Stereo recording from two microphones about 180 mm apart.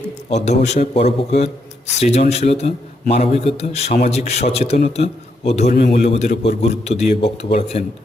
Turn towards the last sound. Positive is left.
turn(degrees=35)  # may be behind; listen again after turning